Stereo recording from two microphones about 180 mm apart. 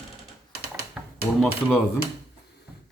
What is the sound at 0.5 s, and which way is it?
Typing, 60° right (ahead or behind).